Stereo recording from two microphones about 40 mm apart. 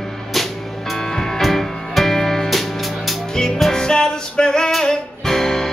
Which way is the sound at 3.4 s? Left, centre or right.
Left.